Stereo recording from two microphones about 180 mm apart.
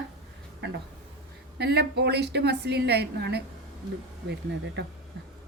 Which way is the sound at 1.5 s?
65° right (ahead or behind).